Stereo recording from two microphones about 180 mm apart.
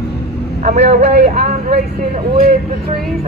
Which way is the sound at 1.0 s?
65° right (ahead or behind).